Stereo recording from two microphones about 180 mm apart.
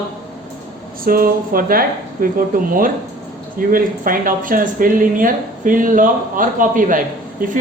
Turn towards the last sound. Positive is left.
turn(degrees=-50)  # may be behind; listen again after turning